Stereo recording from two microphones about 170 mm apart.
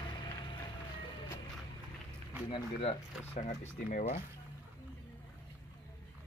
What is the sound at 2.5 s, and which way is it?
Speech, 35° left (ahead or behind).